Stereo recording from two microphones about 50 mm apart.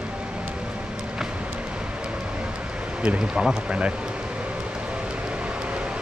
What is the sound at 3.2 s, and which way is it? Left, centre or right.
Speech, centre.